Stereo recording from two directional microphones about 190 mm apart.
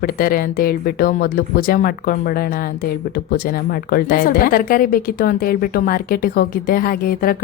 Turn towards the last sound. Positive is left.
turn(degrees=50)  # may be behind; listen again after turning